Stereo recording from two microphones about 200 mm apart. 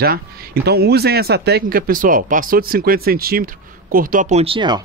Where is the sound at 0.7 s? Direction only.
55° right (ahead or behind).